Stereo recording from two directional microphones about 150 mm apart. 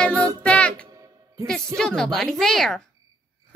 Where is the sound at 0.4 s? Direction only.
10° left (ahead or behind).